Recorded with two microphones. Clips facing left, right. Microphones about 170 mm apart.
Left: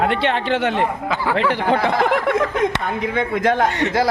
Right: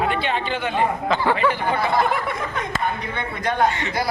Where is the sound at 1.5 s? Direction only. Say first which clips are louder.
Left 4 dB; 90° left.